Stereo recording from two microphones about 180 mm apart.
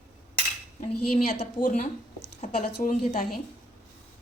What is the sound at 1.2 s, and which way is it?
Speech, 60° left (ahead or behind).